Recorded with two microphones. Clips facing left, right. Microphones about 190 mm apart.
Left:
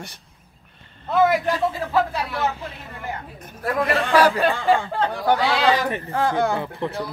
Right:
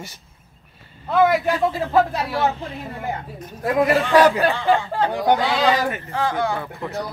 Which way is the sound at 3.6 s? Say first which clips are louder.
Right 4 dB; 20° right (ahead or behind).